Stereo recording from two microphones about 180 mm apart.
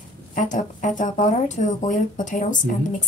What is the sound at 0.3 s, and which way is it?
A woman's voice, 45° left (ahead or behind).